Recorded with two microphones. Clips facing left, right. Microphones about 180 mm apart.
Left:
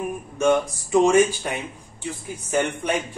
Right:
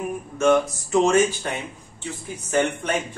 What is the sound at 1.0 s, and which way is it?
Speech, 10° left (ahead or behind).